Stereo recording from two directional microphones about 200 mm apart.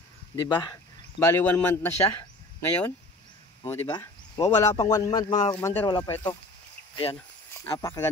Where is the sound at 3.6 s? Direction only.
15° left (ahead or behind).